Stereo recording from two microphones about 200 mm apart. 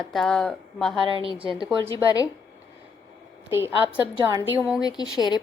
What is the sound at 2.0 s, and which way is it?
Speech, 20° left (ahead or behind).